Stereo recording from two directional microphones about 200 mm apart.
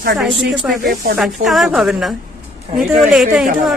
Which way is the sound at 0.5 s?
5° right (ahead or behind).